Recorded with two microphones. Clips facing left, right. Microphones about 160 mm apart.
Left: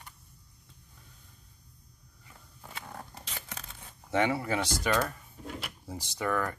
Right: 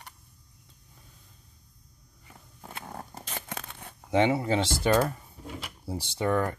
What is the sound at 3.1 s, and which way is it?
Tearing, 50° right (ahead or behind).